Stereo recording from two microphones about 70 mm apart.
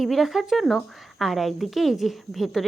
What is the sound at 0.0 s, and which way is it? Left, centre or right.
A woman's voice, centre.